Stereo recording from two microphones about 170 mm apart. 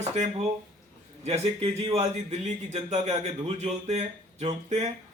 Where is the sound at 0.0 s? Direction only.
40° right (ahead or behind).